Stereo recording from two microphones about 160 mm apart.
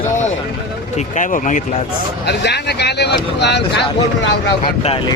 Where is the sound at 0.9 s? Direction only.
50° left (ahead or behind).